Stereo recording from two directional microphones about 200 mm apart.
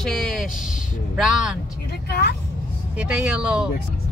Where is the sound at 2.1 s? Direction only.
55° left (ahead or behind).